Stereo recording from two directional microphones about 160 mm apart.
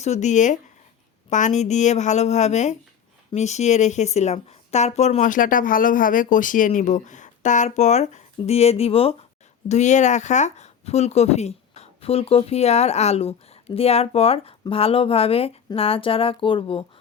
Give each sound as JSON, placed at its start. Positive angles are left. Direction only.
{"t": 0.0, "sound": "a woman's voice", "side_deg": 45}